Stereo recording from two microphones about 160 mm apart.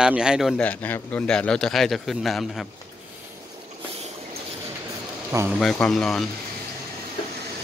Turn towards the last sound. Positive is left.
turn(degrees=0)  # may be behind; listen again after turning